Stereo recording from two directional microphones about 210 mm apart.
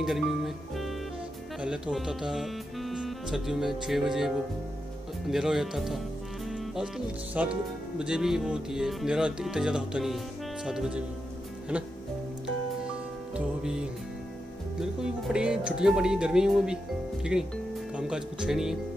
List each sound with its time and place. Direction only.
0.0 s speech: centre (ahead or behind)
1.6 s music: 5° right (ahead or behind)
5.3 s music: centre (ahead or behind)
7.3 s speech: 5° right (ahead or behind)
8.0 s music: 5° right (ahead or behind)
11.7 s speech: 5° right (ahead or behind)
13.6 s music: 5° right (ahead or behind)
17.9 s speech: 5° right (ahead or behind)